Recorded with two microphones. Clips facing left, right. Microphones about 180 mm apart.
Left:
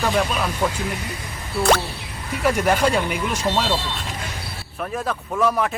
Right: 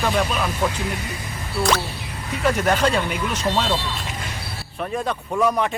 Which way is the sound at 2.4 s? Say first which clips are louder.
Left 1 dB; 10° left (ahead or behind).